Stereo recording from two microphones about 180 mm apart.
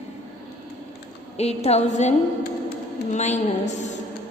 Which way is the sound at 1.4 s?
35° left (ahead or behind).